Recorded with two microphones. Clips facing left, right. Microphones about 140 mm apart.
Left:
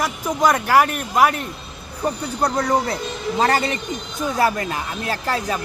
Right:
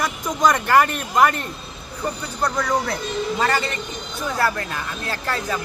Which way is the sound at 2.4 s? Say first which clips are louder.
Left 2 dB; 30° left (ahead or behind).